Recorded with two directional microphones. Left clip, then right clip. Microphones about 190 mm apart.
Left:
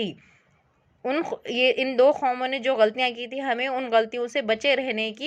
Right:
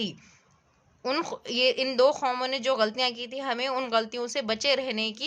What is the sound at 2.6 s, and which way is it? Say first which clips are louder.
Speech: left 6 dB; 15° left (ahead or behind).